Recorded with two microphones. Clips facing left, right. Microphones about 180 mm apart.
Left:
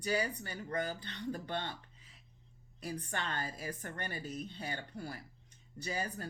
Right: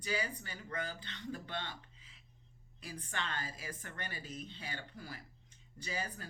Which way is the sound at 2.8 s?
40° left (ahead or behind).